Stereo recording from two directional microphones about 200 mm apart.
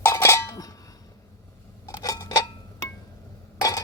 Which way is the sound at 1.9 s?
20° left (ahead or behind).